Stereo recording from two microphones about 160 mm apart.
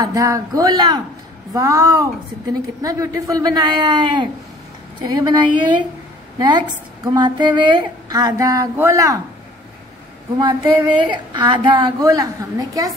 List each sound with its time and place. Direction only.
0.0 s a woman's voice: 20° right (ahead or behind)
10.4 s a woman's voice: 30° right (ahead or behind)